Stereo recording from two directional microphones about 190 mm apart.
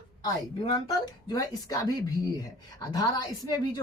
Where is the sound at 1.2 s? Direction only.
20° left (ahead or behind).